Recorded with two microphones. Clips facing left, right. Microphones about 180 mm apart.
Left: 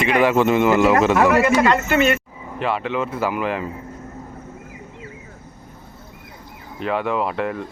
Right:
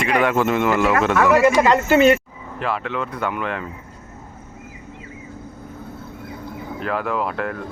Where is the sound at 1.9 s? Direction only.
35° right (ahead or behind).